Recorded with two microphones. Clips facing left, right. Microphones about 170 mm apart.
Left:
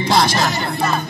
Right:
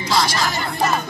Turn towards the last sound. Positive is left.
turn(degrees=60)  # may be behind; listen again after turning